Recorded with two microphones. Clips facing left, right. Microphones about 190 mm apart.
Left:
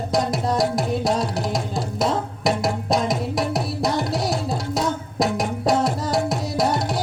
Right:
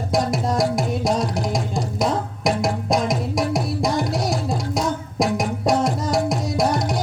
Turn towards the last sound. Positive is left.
turn(degrees=0)  # may be behind; listen again after turning